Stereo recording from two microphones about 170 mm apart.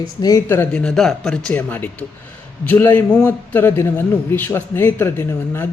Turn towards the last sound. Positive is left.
turn(degrees=15)  # may be behind; listen again after turning